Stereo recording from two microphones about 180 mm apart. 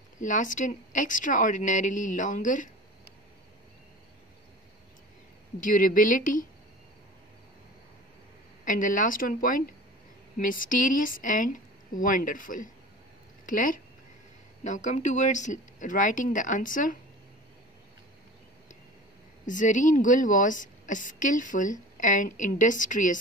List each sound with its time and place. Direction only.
0.2 s a woman's voice: 45° left (ahead or behind)
5.6 s a woman's voice: 50° left (ahead or behind)
8.6 s a woman's voice: 45° left (ahead or behind)
19.4 s a woman's voice: 45° left (ahead or behind)